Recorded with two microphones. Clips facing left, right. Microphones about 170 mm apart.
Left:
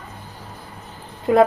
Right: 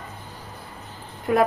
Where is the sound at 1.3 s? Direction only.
20° left (ahead or behind).